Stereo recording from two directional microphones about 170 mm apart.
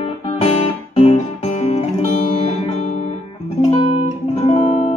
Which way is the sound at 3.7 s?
35° left (ahead or behind).